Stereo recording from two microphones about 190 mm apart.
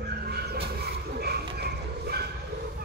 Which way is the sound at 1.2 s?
55° right (ahead or behind).